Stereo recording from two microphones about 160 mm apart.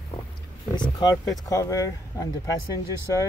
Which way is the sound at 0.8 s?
25° left (ahead or behind).